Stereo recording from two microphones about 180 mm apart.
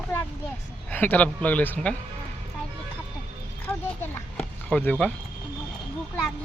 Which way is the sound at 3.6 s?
10° left (ahead or behind).